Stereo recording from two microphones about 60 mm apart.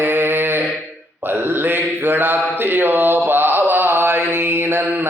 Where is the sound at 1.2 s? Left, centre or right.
Right.